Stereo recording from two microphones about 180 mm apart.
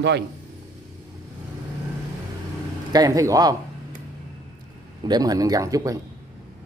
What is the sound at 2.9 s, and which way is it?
Speech, 20° right (ahead or behind).